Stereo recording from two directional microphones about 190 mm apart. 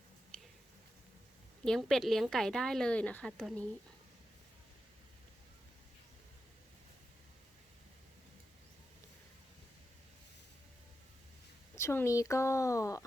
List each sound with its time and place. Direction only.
1.6 s a woman's voice: centre (ahead or behind)
11.7 s speech: 15° left (ahead or behind)